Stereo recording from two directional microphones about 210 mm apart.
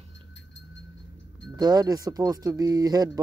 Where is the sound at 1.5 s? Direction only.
20° right (ahead or behind).